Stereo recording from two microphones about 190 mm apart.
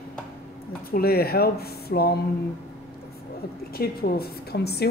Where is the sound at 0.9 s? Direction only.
55° left (ahead or behind).